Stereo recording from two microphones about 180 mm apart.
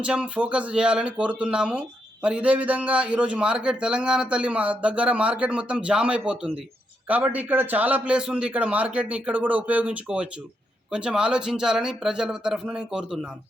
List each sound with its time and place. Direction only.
0.0 s a man's voice: 5° right (ahead or behind)